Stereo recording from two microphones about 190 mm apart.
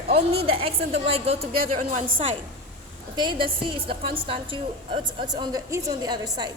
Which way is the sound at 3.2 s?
25° right (ahead or behind).